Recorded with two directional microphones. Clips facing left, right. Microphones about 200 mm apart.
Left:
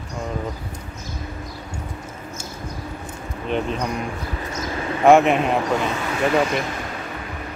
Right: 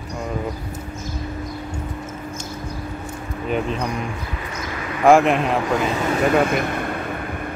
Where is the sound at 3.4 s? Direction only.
5° right (ahead or behind).